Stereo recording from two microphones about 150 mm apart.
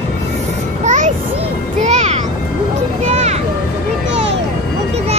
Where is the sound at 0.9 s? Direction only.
50° right (ahead or behind).